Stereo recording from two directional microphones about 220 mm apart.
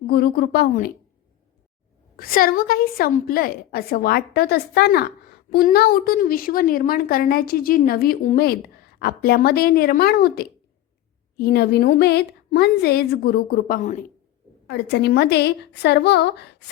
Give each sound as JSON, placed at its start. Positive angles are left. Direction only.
{"t": 0.1, "sound": "a woman's voice", "side_deg": 45}
{"t": 2.1, "sound": "a woman's voice", "side_deg": 40}
{"t": 14.7, "sound": "a woman's voice", "side_deg": 50}